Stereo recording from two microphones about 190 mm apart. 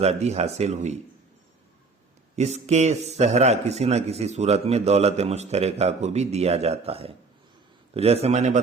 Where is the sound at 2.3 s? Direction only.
35° right (ahead or behind).